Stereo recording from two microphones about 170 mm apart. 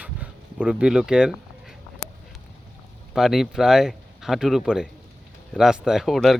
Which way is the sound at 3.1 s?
Centre (ahead or behind).